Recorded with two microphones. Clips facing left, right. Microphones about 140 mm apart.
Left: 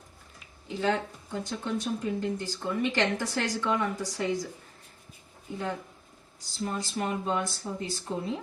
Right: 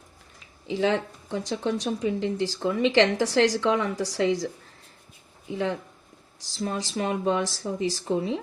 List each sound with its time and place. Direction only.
0.7 s speech: 90° right
6.6 s speech: 90° right